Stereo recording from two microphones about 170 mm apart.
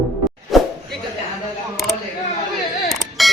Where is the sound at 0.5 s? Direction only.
Centre (ahead or behind).